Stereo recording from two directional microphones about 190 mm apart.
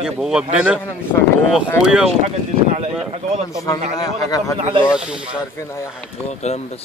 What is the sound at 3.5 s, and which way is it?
A man's voice, 20° left (ahead or behind).